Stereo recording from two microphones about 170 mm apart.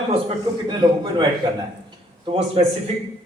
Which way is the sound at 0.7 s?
25° right (ahead or behind).